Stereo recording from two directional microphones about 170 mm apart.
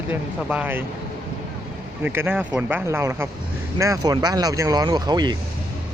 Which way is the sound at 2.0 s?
10° right (ahead or behind).